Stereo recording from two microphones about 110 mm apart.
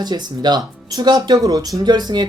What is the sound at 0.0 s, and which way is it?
Speech, 40° right (ahead or behind).